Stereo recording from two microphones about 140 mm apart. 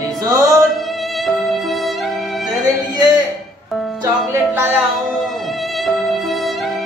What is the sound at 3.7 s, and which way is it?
Music, centre (ahead or behind).